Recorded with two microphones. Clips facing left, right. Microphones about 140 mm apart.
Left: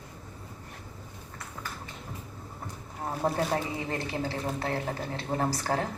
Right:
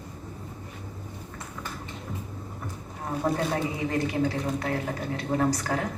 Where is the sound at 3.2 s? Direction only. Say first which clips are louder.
Right 2 dB; 30° left (ahead or behind).